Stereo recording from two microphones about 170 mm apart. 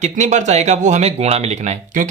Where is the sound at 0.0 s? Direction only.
45° right (ahead or behind).